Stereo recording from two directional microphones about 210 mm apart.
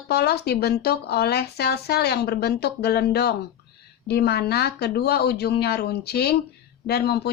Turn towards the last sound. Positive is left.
turn(degrees=50)  # may be behind; listen again after turning